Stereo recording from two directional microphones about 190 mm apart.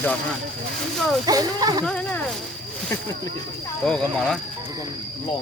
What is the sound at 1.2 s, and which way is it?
Speech, 20° right (ahead or behind).